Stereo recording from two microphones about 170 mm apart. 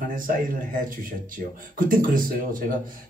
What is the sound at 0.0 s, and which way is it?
Speech, 55° right (ahead or behind).